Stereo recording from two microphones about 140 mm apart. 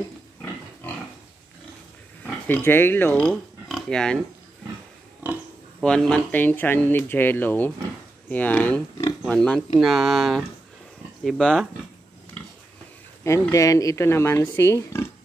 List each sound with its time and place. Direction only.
2.4 s speech: 15° left (ahead or behind)
5.2 s pig: 10° right (ahead or behind)
5.8 s speech: 5° left (ahead or behind)
9.8 s speech: centre (ahead or behind)
13.2 s speech: 20° left (ahead or behind)